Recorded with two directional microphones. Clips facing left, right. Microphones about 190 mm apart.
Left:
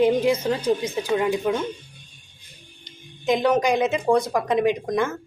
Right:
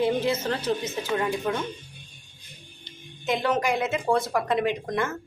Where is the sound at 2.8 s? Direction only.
15° left (ahead or behind).